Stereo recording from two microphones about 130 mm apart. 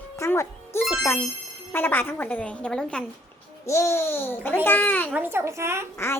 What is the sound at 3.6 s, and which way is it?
A woman's voice, 20° left (ahead or behind).